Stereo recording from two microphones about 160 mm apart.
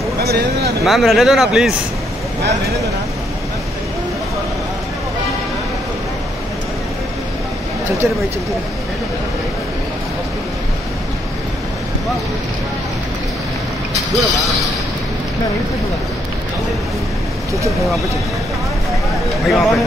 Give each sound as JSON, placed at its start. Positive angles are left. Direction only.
{"t": 0.2, "sound": "speech", "side_deg": -80}
{"t": 0.8, "sound": "speech", "side_deg": 0}
{"t": 13.9, "sound": "speech", "side_deg": 0}
{"t": 19.4, "sound": "speech", "side_deg": 0}